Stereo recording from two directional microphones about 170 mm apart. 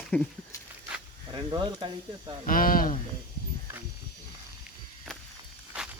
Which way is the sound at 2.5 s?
55° left (ahead or behind).